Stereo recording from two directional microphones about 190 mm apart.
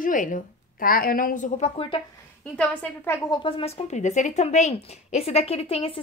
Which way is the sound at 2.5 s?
5° left (ahead or behind).